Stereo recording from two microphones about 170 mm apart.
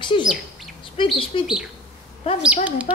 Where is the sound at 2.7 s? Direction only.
10° right (ahead or behind).